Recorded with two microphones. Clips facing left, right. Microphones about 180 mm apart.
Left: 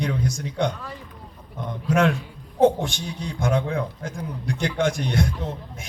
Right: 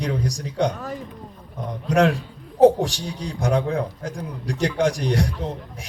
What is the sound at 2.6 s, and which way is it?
A man's voice, 35° right (ahead or behind).